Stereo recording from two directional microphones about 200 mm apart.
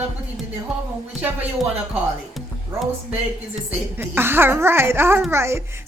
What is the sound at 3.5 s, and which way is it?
A child's voice, 10° right (ahead or behind).